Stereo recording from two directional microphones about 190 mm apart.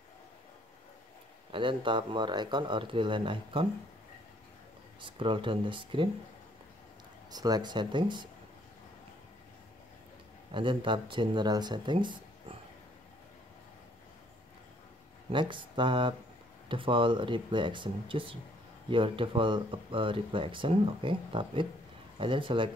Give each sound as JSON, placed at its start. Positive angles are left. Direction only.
{"t": 1.5, "sound": "speech", "side_deg": -25}
{"t": 5.0, "sound": "speech", "side_deg": -25}
{"t": 7.2, "sound": "speech", "side_deg": -20}
{"t": 10.5, "sound": "speech", "side_deg": -25}
{"t": 15.3, "sound": "speech", "side_deg": -25}